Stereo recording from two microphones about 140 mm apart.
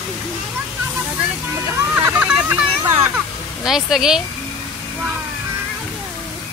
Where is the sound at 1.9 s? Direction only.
10° right (ahead or behind).